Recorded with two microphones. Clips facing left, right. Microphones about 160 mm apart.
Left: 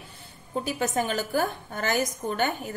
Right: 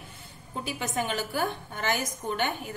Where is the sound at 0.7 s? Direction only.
40° left (ahead or behind).